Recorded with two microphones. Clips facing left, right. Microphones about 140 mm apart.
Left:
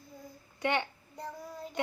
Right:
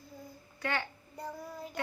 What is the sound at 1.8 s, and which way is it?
Child singing, 20° left (ahead or behind).